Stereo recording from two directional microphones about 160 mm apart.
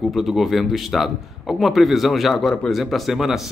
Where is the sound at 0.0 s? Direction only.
Centre (ahead or behind).